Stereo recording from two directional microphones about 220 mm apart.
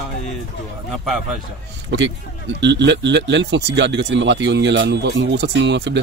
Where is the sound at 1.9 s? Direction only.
50° right (ahead or behind).